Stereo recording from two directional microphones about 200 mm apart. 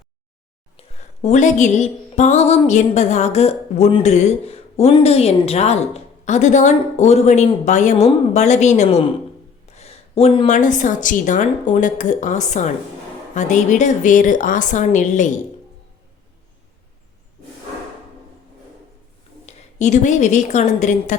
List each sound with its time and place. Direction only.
0.9 s music: 35° left (ahead or behind)
19.5 s a woman's voice: 35° left (ahead or behind)